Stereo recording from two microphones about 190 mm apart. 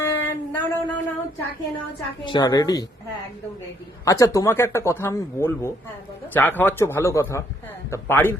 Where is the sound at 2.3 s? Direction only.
20° left (ahead or behind).